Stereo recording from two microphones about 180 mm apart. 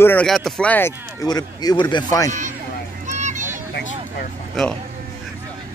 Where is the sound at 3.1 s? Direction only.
40° right (ahead or behind).